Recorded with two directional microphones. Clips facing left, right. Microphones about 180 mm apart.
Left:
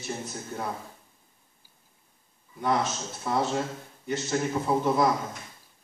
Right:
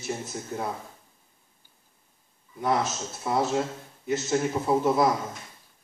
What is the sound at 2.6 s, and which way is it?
A man's voice, 5° right (ahead or behind).